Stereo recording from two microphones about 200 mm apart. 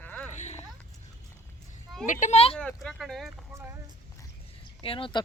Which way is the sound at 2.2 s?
30° left (ahead or behind).